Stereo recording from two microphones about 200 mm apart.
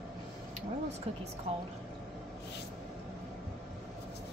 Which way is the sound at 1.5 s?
30° right (ahead or behind).